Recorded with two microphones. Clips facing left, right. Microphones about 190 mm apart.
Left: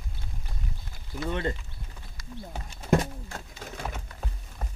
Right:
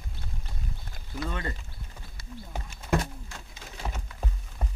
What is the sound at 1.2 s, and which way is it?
Speech, 25° left (ahead or behind).